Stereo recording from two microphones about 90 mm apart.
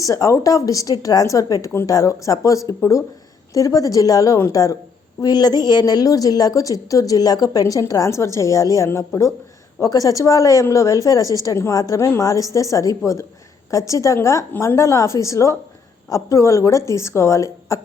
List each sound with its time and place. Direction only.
0.0 s a woman's voice: 40° left (ahead or behind)